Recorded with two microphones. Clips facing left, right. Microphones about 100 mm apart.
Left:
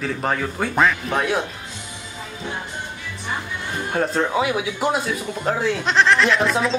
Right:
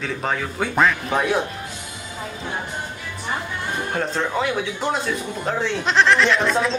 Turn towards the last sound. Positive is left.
turn(degrees=0)  # may be behind; listen again after turning